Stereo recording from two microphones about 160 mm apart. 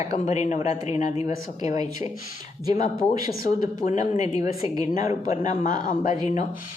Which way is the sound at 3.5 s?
50° left (ahead or behind).